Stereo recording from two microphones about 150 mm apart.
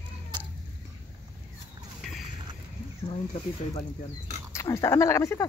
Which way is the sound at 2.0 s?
Centre (ahead or behind).